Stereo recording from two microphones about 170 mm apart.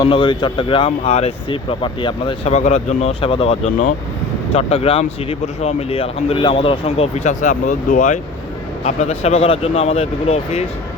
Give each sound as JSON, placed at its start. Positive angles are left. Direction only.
{"t": 0.0, "sound": "speech", "side_deg": 30}
{"t": 2.5, "sound": "speech", "side_deg": 40}